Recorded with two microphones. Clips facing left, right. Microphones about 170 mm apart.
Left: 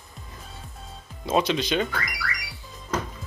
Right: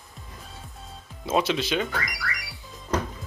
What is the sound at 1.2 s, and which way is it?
Speech, 5° right (ahead or behind).